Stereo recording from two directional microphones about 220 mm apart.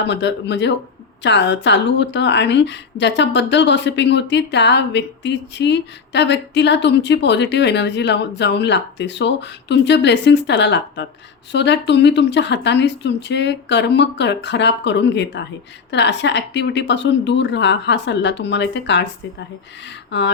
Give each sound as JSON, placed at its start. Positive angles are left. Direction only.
{"t": 0.1, "sound": "a woman's voice", "side_deg": 50}
{"t": 20.1, "sound": "speech", "side_deg": 55}